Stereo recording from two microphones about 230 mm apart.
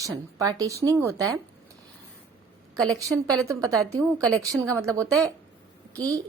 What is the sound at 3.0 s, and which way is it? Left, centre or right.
A woman's voice, centre.